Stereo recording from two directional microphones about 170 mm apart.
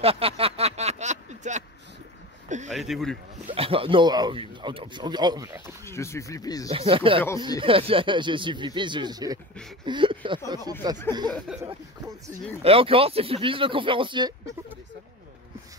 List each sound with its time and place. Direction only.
0.0 s a sound: 35° right (ahead or behind)
2.7 s speech: centre (ahead or behind)
3.5 s speech: 35° right (ahead or behind)
5.9 s speech: 15° left (ahead or behind)
6.7 s speech: 35° right (ahead or behind)
9.8 s a sound: 30° right (ahead or behind)
10.8 s speech: 25° right (ahead or behind)
12.6 s speech: 35° right (ahead or behind)